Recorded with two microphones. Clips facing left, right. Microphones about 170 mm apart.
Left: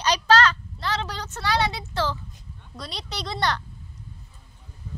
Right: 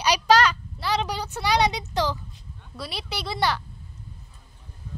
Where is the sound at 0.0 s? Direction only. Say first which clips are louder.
Right 1 dB; 10° right (ahead or behind).